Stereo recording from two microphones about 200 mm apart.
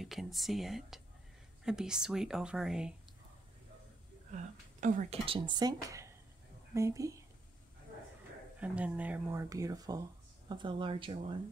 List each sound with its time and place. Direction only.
0.0 s speech: centre (ahead or behind)
4.3 s a woman's voice: 40° right (ahead or behind); by 7.2 s 15° right (ahead or behind)
8.5 s a woman's voice: 5° right (ahead or behind); by 11.1 s 25° right (ahead or behind)